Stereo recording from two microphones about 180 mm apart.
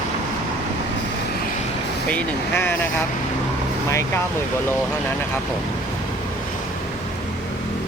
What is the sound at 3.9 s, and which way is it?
Speech, 15° left (ahead or behind).